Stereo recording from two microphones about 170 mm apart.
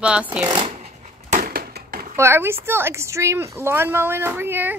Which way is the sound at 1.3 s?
60° right (ahead or behind).